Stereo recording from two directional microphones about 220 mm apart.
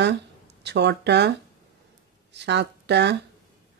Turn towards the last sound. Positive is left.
turn(degrees=-50)  # may be behind; listen again after turning